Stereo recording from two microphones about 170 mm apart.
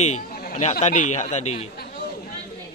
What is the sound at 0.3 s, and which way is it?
Chatter, 60° left (ahead or behind).